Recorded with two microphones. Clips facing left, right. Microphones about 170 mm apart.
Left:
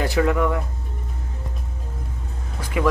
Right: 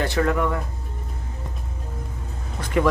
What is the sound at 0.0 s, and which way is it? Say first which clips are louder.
Speech: left 2 dB; 10° left (ahead or behind).